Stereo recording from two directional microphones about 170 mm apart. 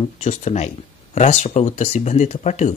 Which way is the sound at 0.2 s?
40° left (ahead or behind).